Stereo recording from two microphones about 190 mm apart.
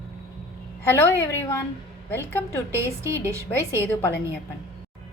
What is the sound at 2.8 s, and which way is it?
Speech, 15° right (ahead or behind).